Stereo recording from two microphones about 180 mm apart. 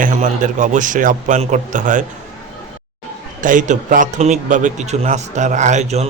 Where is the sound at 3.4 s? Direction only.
45° right (ahead or behind).